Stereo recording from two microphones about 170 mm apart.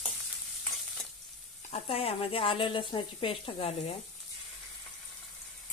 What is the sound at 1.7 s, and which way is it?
Speech, 35° left (ahead or behind).